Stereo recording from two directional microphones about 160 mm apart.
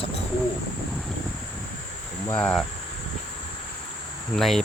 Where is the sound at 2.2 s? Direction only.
10° left (ahead or behind).